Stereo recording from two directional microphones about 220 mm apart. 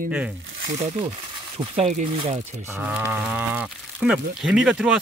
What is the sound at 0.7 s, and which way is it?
Speech, 25° right (ahead or behind).